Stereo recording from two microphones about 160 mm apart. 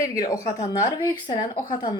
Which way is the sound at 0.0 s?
20° left (ahead or behind).